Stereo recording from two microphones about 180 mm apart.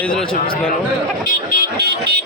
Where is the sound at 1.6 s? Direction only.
60° right (ahead or behind).